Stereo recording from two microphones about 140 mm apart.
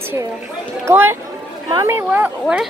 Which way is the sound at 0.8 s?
15° right (ahead or behind).